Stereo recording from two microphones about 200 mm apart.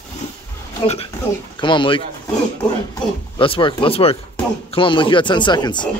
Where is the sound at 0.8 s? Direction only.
30° left (ahead or behind).